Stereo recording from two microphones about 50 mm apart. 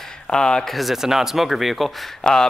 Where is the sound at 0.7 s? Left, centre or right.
Centre.